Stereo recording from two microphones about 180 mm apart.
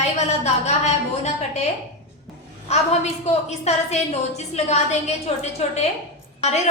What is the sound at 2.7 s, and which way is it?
A woman's voice, 35° left (ahead or behind).